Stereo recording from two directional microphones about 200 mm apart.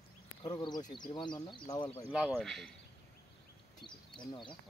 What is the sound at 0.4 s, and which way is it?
Speech, 20° left (ahead or behind).